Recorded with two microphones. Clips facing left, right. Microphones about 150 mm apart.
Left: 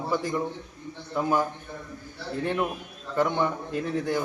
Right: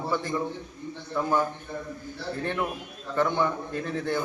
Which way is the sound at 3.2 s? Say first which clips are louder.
Even; 15° left (ahead or behind).